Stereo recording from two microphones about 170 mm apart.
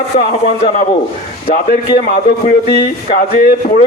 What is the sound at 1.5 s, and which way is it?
A man's voice, 60° left (ahead or behind).